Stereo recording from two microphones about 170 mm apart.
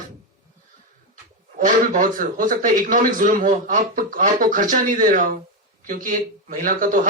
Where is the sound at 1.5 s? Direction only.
50° right (ahead or behind).